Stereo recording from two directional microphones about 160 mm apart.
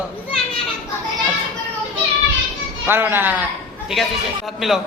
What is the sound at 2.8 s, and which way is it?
Speech, 15° right (ahead or behind).